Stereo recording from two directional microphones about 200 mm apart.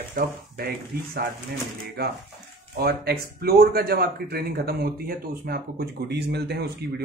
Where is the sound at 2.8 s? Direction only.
50° right (ahead or behind).